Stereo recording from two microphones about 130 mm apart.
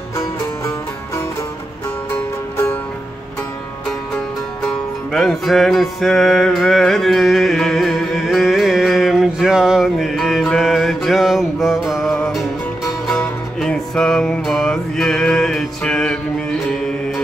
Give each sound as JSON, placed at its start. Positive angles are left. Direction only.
{"t": 2.5, "sound": "music", "side_deg": 20}
{"t": 4.6, "sound": "music", "side_deg": 0}